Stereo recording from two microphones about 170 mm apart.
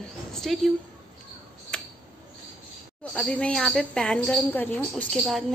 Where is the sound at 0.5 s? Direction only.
Centre (ahead or behind).